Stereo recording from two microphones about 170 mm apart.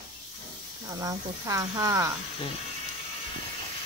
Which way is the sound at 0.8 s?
20° right (ahead or behind).